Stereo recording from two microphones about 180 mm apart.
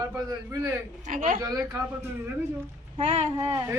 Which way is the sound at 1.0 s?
50° right (ahead or behind).